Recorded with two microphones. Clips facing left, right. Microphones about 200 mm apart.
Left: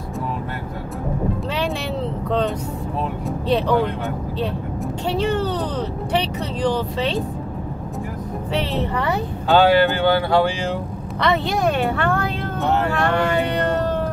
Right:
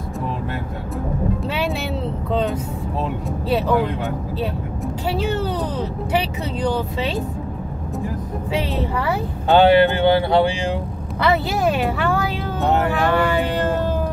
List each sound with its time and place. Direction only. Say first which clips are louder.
3.4 s mantra: left 1 dB; 5° right (ahead or behind)
5.1 s speech: left 2 dB; 5° right (ahead or behind)
6.7 s mantra: left 1 dB; 5° right (ahead or behind)
8.5 s speech: even; 5° right (ahead or behind)
9.5 s speech: right 2 dB; 25° right (ahead or behind)
13.1 s mantra: right 1 dB; centre (ahead or behind)